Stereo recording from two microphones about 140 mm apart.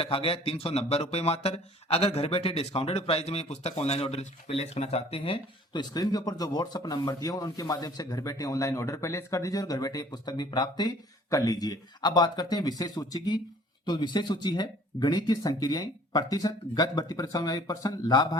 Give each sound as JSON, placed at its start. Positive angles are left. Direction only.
{"t": 0.0, "sound": "speech", "side_deg": 40}